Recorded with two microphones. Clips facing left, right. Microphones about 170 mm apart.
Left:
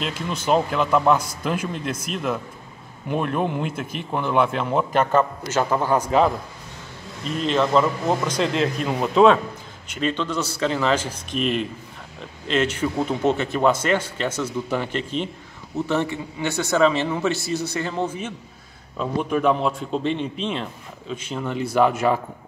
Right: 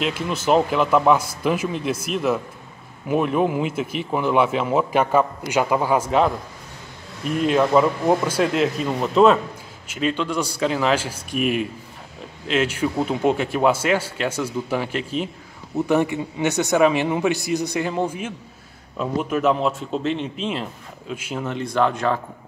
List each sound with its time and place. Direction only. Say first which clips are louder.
0.0 s speech: right 3 dB; 5° right (ahead or behind)